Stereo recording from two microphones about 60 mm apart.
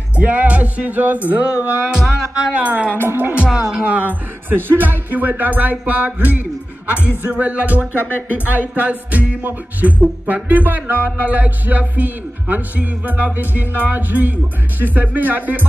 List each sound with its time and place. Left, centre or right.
0.1 s music: right
3.1 s speech: right
3.5 s music: centre